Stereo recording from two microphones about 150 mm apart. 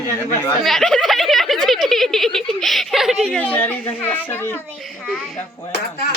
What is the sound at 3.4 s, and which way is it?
Speech, 10° left (ahead or behind).